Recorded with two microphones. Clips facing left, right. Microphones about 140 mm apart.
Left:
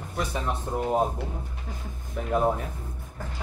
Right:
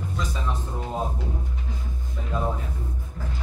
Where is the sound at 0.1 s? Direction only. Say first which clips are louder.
Left 4 dB; 60° left (ahead or behind).